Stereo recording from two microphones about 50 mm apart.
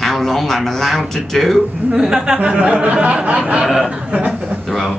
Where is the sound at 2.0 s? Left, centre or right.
Centre.